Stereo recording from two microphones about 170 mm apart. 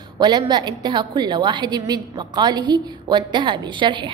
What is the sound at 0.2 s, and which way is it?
A woman's voice, 25° right (ahead or behind).